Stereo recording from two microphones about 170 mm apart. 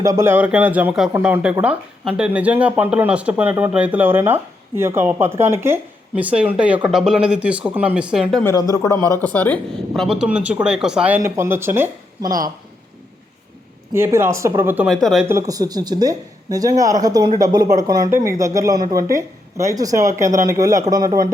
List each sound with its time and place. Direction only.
0.0 s speech: 15° right (ahead or behind); by 8.4 s centre (ahead or behind)
8.4 s speech: 20° left (ahead or behind); by 11.9 s 15° right (ahead or behind)
13.9 s speech: 15° right (ahead or behind)
14.8 s speech: centre (ahead or behind)
15.3 s speech: 20° right (ahead or behind)